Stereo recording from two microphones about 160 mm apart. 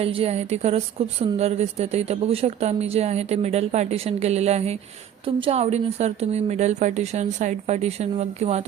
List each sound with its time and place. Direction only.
0.0 s speech: 40° right (ahead or behind)